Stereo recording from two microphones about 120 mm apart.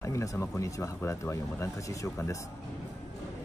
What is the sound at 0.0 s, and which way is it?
Speech, 25° left (ahead or behind).